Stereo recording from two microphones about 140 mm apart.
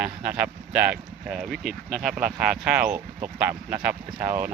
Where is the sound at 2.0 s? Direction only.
90° right.